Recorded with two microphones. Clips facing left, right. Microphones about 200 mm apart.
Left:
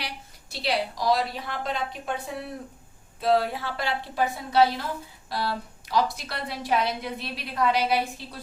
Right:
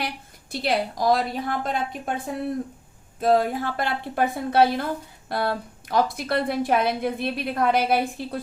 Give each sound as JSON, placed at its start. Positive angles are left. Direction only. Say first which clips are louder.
{"t": 0.5, "sound": "a woman's voice", "louder": "right 3 dB", "side_deg": -50}